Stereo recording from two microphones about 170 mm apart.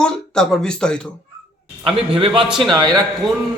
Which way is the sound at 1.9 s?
35° right (ahead or behind).